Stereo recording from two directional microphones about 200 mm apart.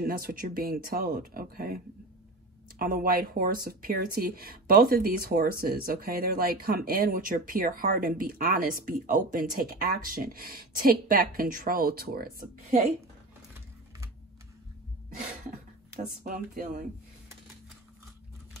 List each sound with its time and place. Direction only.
0.0 s speech: 45° right (ahead or behind)
2.8 s speech: 45° right (ahead or behind)
16.3 s speech: 40° right (ahead or behind)